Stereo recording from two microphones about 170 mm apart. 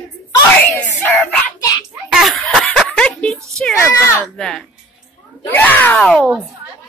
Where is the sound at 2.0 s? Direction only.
Centre (ahead or behind).